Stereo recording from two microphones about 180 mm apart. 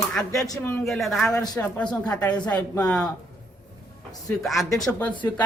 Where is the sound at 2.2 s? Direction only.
20° left (ahead or behind).